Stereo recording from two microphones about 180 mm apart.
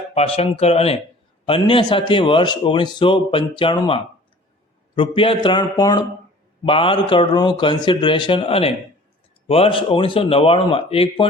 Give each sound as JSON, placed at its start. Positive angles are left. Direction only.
{"t": 0.1, "sound": "a man's voice", "side_deg": 35}